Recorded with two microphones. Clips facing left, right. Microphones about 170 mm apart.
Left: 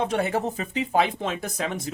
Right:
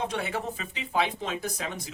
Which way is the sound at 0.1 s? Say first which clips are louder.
Left 7 dB; 45° left (ahead or behind).